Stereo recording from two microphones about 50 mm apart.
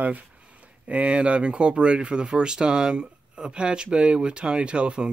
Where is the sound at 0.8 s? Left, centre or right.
Right.